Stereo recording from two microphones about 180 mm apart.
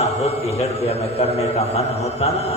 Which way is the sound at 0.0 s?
35° left (ahead or behind).